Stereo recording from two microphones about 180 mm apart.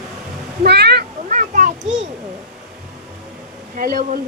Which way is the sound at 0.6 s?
65° right (ahead or behind).